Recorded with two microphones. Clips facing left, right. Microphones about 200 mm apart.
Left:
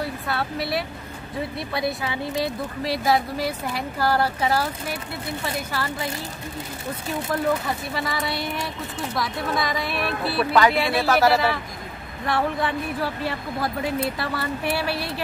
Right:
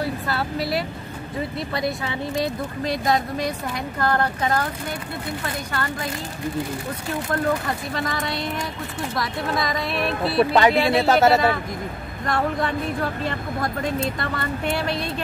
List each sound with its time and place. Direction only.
0.0 s speech: centre (ahead or behind)
7.9 s speech: 5° left (ahead or behind)
10.3 s speech: 25° right (ahead or behind)
11.3 s speech: centre (ahead or behind)